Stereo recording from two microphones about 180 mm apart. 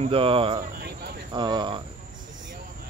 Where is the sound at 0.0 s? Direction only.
30° right (ahead or behind).